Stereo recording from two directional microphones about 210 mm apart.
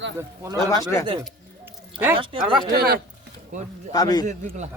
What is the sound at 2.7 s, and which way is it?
Speech, 50° right (ahead or behind).